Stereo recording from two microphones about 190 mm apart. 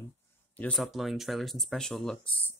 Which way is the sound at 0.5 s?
5° left (ahead or behind).